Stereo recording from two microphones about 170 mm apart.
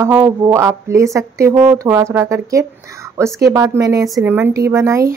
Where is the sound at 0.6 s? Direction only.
15° right (ahead or behind).